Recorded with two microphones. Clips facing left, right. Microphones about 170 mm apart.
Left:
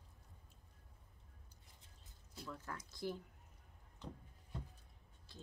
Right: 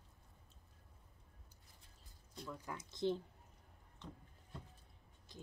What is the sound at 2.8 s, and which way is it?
Speech, 25° right (ahead or behind).